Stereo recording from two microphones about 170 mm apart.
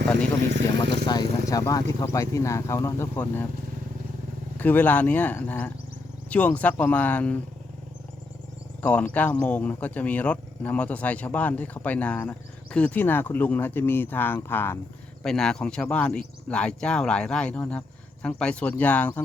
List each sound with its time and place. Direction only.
1.0 s speech: 25° left (ahead or behind)
4.5 s speech: 10° left (ahead or behind)
8.8 s speech: 10° left (ahead or behind)